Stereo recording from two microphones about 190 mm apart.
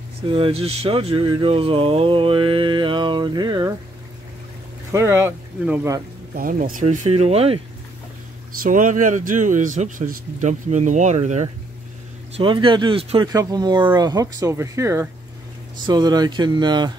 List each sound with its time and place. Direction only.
0.3 s speech: 30° right (ahead or behind)
4.9 s speech: 15° right (ahead or behind)
6.3 s speech: 45° right (ahead or behind); by 7.6 s 30° right (ahead or behind)
8.6 s speech: 45° right (ahead or behind)
12.4 s speech: 25° right (ahead or behind)